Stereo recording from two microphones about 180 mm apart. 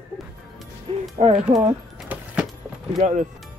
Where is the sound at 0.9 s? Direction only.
35° right (ahead or behind).